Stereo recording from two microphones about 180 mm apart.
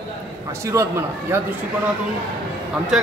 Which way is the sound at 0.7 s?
15° right (ahead or behind).